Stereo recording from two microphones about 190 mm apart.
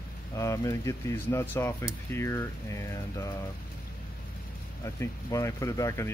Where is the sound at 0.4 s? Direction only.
15° left (ahead or behind).